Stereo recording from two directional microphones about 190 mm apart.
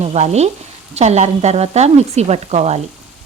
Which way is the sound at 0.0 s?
35° right (ahead or behind).